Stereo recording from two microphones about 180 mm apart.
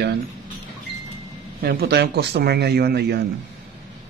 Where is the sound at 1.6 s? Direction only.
60° right (ahead or behind).